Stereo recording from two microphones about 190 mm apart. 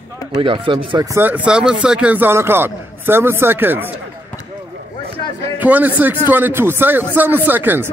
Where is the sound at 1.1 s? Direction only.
10° right (ahead or behind).